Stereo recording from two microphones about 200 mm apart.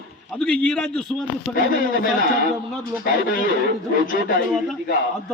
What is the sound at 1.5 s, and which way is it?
Speech, 45° left (ahead or behind).